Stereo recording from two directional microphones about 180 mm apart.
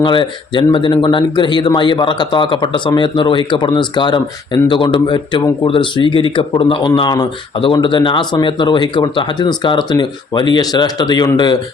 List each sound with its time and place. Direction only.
0.0 s speech: 25° left (ahead or behind)